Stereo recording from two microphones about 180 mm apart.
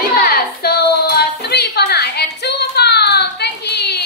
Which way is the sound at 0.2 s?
60° left (ahead or behind).